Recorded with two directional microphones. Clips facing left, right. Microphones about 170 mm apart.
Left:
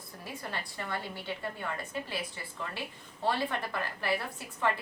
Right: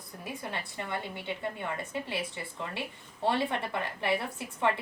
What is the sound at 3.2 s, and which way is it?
A woman's voice, 25° right (ahead or behind).